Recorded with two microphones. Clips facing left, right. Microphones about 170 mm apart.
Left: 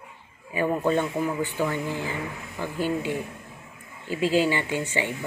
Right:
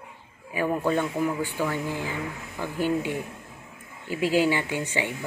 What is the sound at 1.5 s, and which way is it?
Speech, 15° left (ahead or behind).